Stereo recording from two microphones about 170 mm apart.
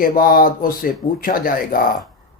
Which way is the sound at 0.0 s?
55° left (ahead or behind).